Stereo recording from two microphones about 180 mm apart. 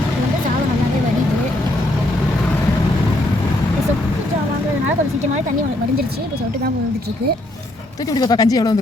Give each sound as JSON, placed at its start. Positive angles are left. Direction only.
{"t": 8.1, "sound": "speech", "side_deg": 20}